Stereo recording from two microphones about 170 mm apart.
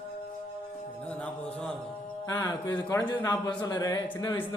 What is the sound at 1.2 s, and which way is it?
Speech, 5° left (ahead or behind).